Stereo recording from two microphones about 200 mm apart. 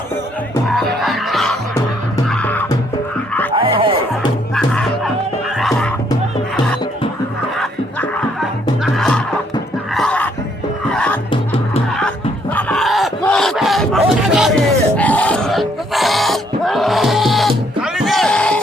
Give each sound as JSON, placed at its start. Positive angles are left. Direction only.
{"t": 0.7, "sound": "music", "side_deg": 0}
{"t": 3.5, "sound": "music", "side_deg": -25}
{"t": 4.5, "sound": "music", "side_deg": 5}
{"t": 7.6, "sound": "music", "side_deg": 0}
{"t": 9.9, "sound": "a sound", "side_deg": 5}
{"t": 10.9, "sound": "music", "side_deg": 5}
{"t": 11.3, "sound": "music", "side_deg": 25}
{"t": 12.5, "sound": "battle cry", "side_deg": 5}